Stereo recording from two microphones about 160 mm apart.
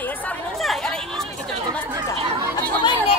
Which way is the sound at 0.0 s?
5° left (ahead or behind).